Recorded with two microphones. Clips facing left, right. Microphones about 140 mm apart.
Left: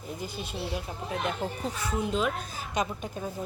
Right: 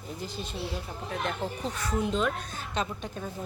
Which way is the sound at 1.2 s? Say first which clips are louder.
Even; 5° left (ahead or behind).